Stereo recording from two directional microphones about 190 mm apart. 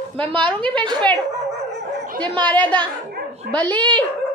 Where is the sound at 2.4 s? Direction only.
10° left (ahead or behind).